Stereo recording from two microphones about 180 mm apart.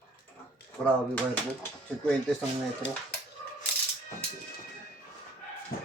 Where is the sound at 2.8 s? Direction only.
90° left.